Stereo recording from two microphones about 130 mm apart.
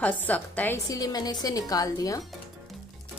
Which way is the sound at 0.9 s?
30° left (ahead or behind).